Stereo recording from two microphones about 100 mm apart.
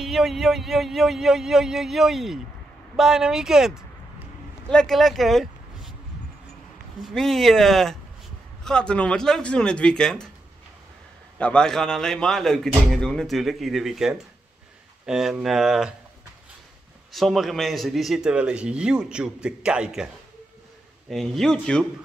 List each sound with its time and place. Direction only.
0.0 s speech: 5° right (ahead or behind)
4.6 s speech: 5° left (ahead or behind)
7.0 s speech: centre (ahead or behind)
11.3 s speech: 10° left (ahead or behind)
17.1 s speech: centre (ahead or behind)
21.1 s speech: 5° left (ahead or behind)